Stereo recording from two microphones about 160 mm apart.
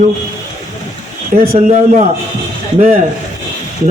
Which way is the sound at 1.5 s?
45° right (ahead or behind).